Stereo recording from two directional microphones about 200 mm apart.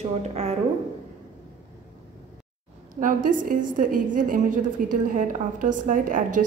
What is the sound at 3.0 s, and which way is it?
A woman's voice, 40° right (ahead or behind).